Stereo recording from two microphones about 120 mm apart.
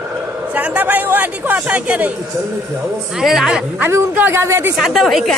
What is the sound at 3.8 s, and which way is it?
Speech, 20° right (ahead or behind).